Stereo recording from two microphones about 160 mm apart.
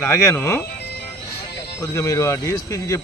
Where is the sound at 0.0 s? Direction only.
15° left (ahead or behind).